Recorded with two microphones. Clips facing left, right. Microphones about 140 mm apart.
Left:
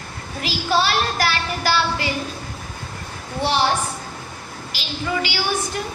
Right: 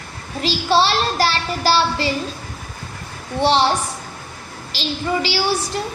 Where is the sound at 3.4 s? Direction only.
30° right (ahead or behind).